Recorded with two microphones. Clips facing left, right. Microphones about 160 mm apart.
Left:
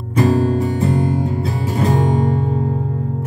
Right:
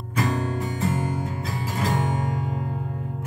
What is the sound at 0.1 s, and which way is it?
Music, 30° left (ahead or behind).